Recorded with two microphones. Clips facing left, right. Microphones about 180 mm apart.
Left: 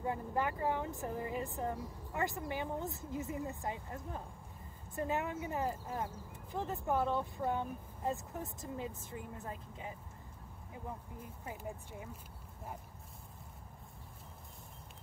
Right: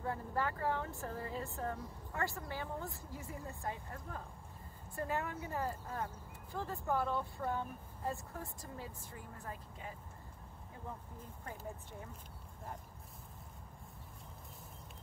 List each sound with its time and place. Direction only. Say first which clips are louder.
0.0 s speech: left 2 dB; 15° left (ahead or behind)